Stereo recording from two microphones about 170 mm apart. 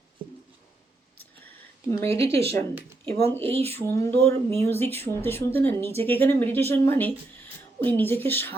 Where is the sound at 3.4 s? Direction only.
35° right (ahead or behind).